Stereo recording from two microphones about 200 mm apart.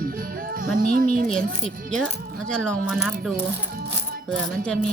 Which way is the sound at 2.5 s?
5° left (ahead or behind).